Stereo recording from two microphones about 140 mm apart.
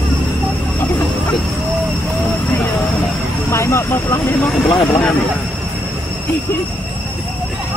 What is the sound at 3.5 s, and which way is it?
Speech, 20° left (ahead or behind).